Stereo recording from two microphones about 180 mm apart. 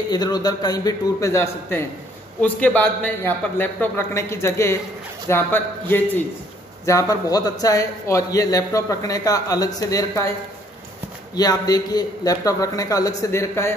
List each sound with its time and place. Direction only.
0.1 s a man's voice: 20° left (ahead or behind)
11.3 s a man's voice: 20° left (ahead or behind)